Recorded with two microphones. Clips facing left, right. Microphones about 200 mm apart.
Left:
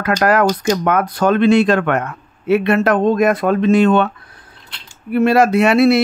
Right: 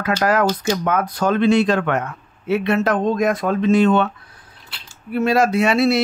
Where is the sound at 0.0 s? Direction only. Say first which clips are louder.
Left 3 dB; 60° left (ahead or behind).